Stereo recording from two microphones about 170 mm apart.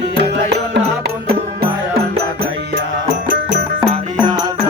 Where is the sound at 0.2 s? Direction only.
75° right (ahead or behind).